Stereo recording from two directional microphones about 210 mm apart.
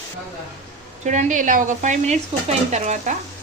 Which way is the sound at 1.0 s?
35° right (ahead or behind).